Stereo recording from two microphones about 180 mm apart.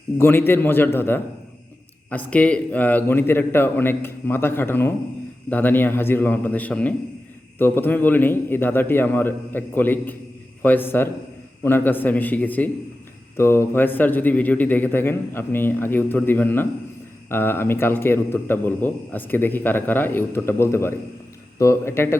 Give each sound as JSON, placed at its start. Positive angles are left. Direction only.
{"t": 0.2, "sound": "a man's voice", "side_deg": 10}